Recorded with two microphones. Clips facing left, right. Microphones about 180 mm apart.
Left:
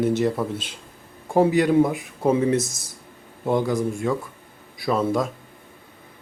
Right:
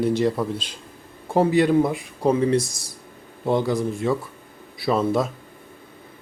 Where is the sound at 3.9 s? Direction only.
Centre (ahead or behind).